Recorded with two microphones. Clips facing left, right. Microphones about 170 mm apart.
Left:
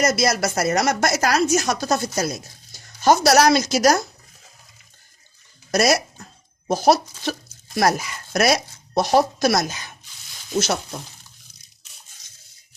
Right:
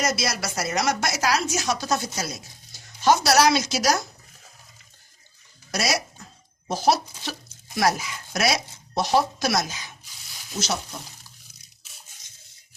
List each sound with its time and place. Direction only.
0.0 s a woman's voice: 45° left (ahead or behind)
5.7 s a woman's voice: 50° left (ahead or behind)